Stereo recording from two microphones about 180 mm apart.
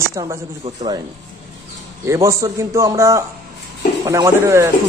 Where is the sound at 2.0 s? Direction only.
15° right (ahead or behind).